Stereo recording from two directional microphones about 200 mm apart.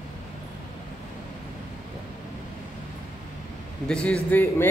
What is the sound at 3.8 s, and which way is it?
Speech, 5° left (ahead or behind).